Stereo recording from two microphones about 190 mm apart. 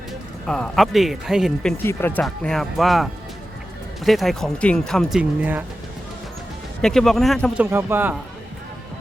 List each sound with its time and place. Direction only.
0.4 s speech: centre (ahead or behind)
1.8 s speech: 10° left (ahead or behind); by 5.6 s 10° right (ahead or behind)
6.8 s speech: centre (ahead or behind)
7.6 s speech: 10° right (ahead or behind)